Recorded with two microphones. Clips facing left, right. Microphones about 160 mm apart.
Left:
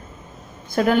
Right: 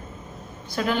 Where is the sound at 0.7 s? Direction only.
50° left (ahead or behind).